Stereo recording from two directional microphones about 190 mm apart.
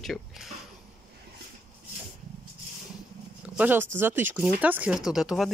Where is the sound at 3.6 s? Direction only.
10° right (ahead or behind).